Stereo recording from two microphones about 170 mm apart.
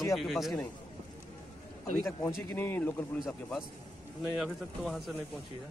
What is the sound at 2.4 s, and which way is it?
Speech, 15° left (ahead or behind).